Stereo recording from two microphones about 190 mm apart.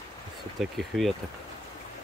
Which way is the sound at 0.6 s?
Centre (ahead or behind).